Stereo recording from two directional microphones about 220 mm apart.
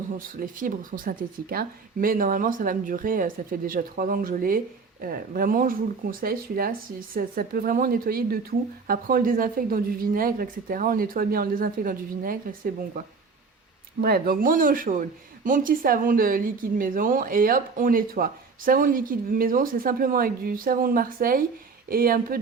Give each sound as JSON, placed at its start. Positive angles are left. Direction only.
{"t": 0.3, "sound": "speech", "side_deg": -40}
{"t": 14.0, "sound": "speech", "side_deg": -40}